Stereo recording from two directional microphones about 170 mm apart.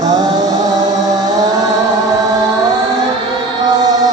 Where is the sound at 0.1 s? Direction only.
25° right (ahead or behind).